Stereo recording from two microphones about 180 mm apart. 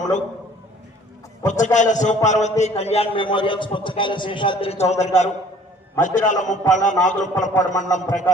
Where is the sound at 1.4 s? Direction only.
40° left (ahead or behind).